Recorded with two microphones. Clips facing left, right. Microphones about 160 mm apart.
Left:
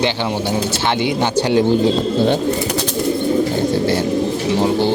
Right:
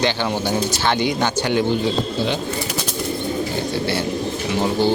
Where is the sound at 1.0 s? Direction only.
30° left (ahead or behind).